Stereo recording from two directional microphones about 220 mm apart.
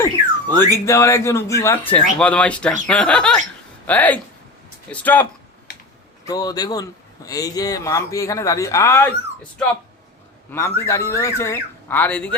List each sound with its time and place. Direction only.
0.0 s a sound: 10° left (ahead or behind)
0.9 s speech: 15° left (ahead or behind)
10.5 s speech: 10° left (ahead or behind)